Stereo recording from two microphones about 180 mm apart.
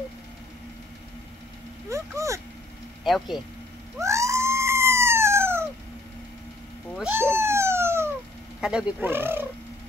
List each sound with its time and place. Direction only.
1.9 s vehicle: 15° right (ahead or behind)
3.0 s speech: centre (ahead or behind)
4.0 s cat: 15° right (ahead or behind)
7.0 s speech: 10° right (ahead or behind)